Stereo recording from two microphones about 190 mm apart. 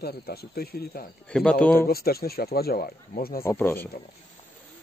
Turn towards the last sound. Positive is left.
turn(degrees=10)  # may be behind; listen again after turning